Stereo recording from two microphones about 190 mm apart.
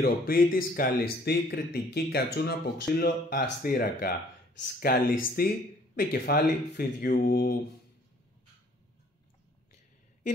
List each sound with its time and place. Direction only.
0.0 s speech: 50° left (ahead or behind)